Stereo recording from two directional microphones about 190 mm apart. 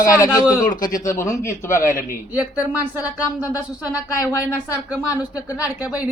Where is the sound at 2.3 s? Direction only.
5° right (ahead or behind).